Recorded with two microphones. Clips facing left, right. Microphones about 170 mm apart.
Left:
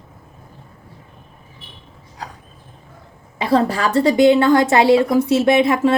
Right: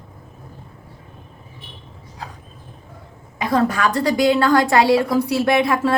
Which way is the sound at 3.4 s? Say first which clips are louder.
Left 2 dB; 30° left (ahead or behind).